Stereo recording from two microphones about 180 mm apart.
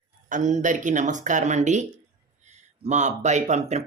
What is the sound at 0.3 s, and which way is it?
Speech, 45° right (ahead or behind).